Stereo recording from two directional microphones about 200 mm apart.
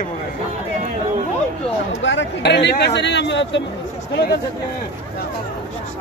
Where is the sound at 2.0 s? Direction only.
60° left (ahead or behind).